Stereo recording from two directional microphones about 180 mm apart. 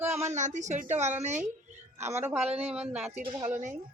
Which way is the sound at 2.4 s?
35° right (ahead or behind).